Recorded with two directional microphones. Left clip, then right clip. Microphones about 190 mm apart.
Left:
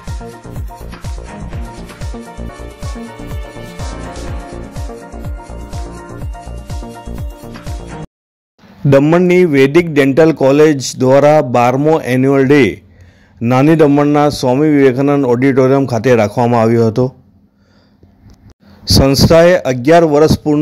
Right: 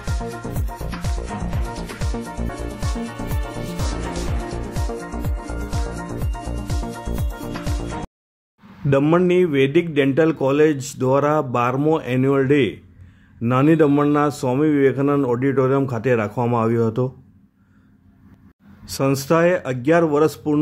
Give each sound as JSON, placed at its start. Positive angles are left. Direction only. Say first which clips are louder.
{"t": 0.0, "sound": "music", "louder": "right 1 dB", "side_deg": 0}
{"t": 9.3, "sound": "a man's voice", "louder": "left 8 dB", "side_deg": 15}
{"t": 18.9, "sound": "a man's voice", "louder": "left 10 dB", "side_deg": 15}